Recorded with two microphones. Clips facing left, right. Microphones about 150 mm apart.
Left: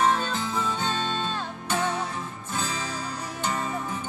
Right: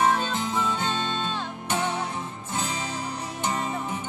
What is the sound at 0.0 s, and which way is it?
Music, 20° right (ahead or behind).